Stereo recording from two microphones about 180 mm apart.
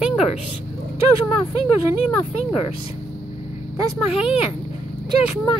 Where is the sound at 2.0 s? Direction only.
35° left (ahead or behind).